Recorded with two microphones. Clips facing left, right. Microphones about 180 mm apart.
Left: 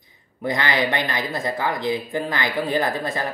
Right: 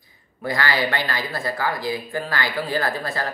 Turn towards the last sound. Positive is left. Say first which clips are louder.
# left 2 dB
turn(degrees=20)  # may be behind; listen again after turning